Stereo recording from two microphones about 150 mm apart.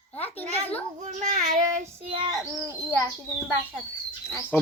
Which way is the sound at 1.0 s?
55° right (ahead or behind).